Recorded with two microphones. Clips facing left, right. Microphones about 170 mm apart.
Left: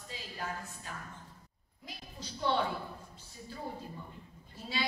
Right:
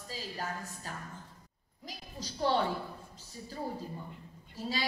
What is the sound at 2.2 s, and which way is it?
Speech, 40° right (ahead or behind).